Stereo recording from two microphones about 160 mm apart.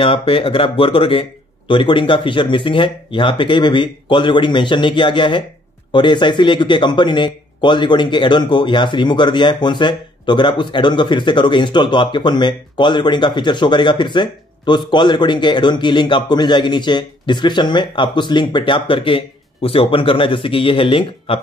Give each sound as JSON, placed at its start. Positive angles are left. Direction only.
{"t": 0.0, "sound": "speech", "side_deg": 35}